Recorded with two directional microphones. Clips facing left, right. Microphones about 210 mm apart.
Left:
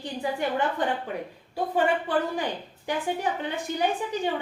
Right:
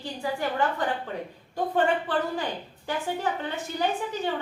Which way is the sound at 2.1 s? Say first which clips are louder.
Left 1 dB; 15° left (ahead or behind).